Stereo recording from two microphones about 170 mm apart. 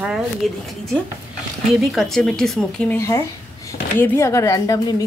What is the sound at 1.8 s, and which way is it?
A woman's voice, centre (ahead or behind).